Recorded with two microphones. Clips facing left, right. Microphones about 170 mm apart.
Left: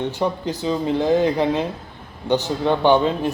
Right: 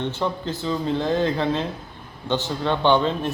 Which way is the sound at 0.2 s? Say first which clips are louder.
Left 3 dB; 15° left (ahead or behind).